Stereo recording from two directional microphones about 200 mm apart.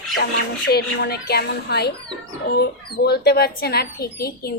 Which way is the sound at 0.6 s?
55° left (ahead or behind).